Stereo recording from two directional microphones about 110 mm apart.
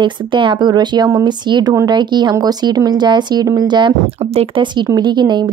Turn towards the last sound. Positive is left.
turn(degrees=-40)  # may be behind; listen again after turning